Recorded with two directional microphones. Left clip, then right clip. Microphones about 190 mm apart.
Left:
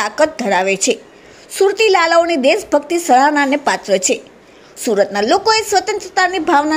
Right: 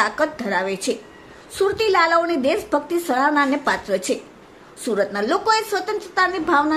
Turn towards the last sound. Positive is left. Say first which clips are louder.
# left 5 dB
turn(degrees=20)  # may be behind; listen again after turning